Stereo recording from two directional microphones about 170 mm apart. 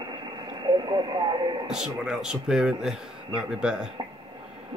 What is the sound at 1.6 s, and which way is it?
Speech, 5° right (ahead or behind).